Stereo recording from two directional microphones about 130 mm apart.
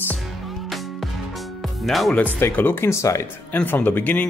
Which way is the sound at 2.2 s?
15° left (ahead or behind).